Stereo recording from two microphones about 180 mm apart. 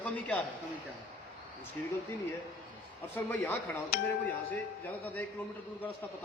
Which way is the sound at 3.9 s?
60° left (ahead or behind).